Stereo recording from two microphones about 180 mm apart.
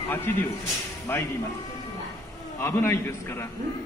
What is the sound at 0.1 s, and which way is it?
Speech, 10° left (ahead or behind).